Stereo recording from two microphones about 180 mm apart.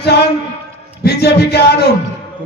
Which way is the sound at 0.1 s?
60° left (ahead or behind).